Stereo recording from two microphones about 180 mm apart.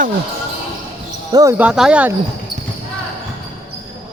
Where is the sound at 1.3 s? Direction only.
20° right (ahead or behind).